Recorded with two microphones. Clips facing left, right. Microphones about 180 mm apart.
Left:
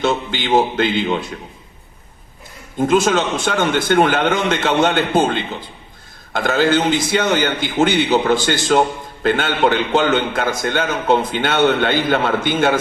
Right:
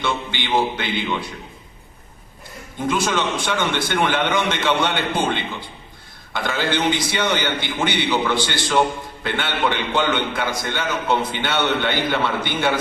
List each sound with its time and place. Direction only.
0.0 s a man's voice: 45° left (ahead or behind)
2.7 s a man's voice: 45° left (ahead or behind)